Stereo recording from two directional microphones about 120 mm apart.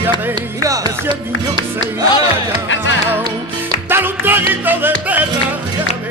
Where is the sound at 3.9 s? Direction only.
15° right (ahead or behind).